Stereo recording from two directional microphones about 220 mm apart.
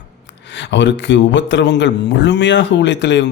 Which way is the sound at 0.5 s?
55° left (ahead or behind).